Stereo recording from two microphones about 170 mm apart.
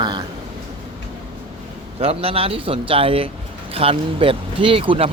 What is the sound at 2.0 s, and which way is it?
Speech, 35° right (ahead or behind).